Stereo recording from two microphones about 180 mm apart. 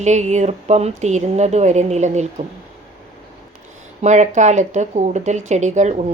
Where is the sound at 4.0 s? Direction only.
40° right (ahead or behind).